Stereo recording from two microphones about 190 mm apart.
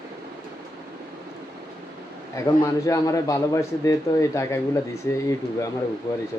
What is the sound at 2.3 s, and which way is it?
Speech, 15° left (ahead or behind).